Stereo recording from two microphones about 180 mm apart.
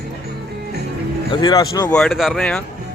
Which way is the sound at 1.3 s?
25° left (ahead or behind).